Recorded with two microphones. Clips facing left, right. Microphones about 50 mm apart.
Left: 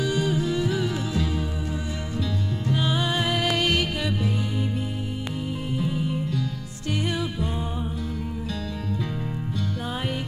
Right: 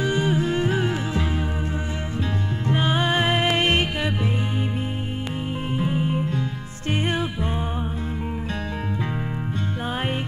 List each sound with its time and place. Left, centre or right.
0.0 s music: right
2.7 s music: right
5.8 s music: right
9.8 s music: right